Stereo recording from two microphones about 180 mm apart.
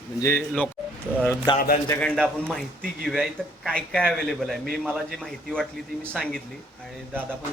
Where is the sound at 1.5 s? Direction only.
25° left (ahead or behind).